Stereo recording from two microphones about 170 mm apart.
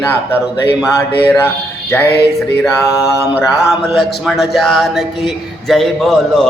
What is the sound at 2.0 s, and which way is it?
Music, 75° left (ahead or behind).